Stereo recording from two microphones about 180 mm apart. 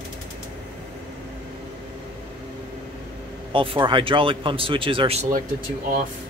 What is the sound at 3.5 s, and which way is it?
A man's voice, 30° right (ahead or behind).